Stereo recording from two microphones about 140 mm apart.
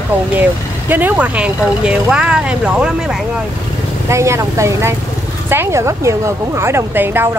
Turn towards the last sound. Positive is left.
turn(degrees=-15)  # may be behind; listen again after turning